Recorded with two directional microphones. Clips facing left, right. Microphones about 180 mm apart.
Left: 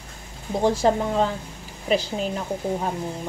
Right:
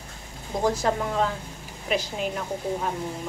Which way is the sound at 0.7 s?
30° left (ahead or behind).